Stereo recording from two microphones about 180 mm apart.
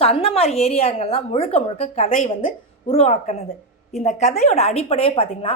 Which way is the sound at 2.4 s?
35° left (ahead or behind).